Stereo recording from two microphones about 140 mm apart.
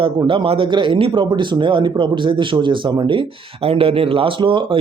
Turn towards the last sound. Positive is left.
turn(degrees=-35)  # may be behind; listen again after turning